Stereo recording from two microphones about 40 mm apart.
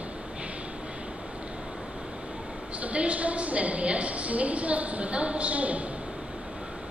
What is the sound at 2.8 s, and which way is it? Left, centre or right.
A woman's voice, right.